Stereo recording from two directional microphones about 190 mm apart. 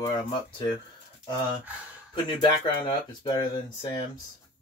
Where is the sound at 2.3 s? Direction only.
25° left (ahead or behind).